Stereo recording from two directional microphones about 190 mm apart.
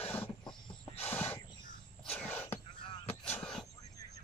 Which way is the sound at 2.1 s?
10° left (ahead or behind).